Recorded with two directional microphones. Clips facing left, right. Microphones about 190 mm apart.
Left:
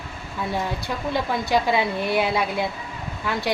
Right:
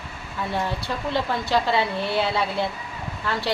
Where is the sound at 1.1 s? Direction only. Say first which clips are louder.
Left 1 dB; 15° left (ahead or behind).